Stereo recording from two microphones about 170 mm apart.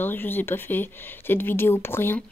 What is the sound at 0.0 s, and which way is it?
A woman's voice, 10° left (ahead or behind).